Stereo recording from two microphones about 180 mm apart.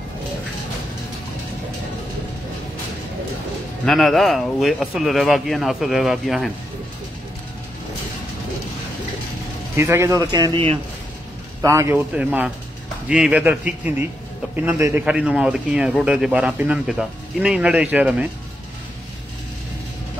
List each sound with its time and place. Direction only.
3.8 s a man's voice: centre (ahead or behind)
9.8 s a man's voice: 15° right (ahead or behind)
11.6 s a man's voice: 15° right (ahead or behind)
12.2 s a man's voice: 5° right (ahead or behind)